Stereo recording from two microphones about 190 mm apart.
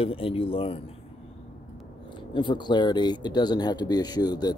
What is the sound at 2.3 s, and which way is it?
Speech, 25° left (ahead or behind).